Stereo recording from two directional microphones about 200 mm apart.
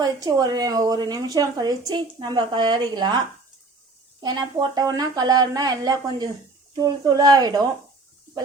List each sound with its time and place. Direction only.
0.0 s a woman's voice: 20° right (ahead or behind)
4.2 s a woman's voice: 20° right (ahead or behind)